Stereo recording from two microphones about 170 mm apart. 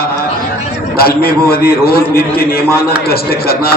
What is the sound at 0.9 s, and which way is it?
A man's voice, 65° left (ahead or behind).